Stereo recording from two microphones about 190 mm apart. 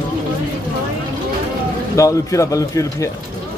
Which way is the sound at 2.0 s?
15° left (ahead or behind).